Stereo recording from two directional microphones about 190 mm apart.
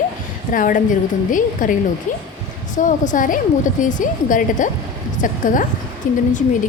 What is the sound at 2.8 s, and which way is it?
Speech, 40° left (ahead or behind).